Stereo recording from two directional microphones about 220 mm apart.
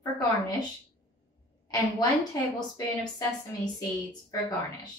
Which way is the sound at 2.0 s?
20° left (ahead or behind).